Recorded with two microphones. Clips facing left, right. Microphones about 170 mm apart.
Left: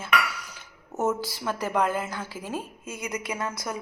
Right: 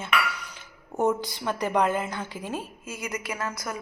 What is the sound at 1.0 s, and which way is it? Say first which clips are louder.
A woman's voice: right 2 dB; 5° left (ahead or behind).